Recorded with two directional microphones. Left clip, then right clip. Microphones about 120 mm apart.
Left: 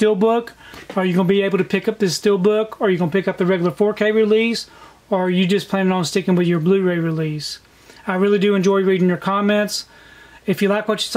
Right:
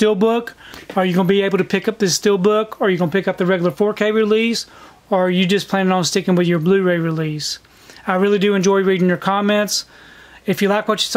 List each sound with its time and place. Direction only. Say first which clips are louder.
0.0 s speech: even; 35° right (ahead or behind)